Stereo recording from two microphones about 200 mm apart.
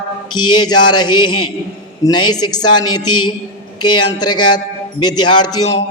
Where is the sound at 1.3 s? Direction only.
90° left.